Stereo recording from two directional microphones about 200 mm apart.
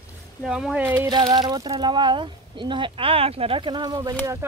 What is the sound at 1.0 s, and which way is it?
Speech, 20° right (ahead or behind).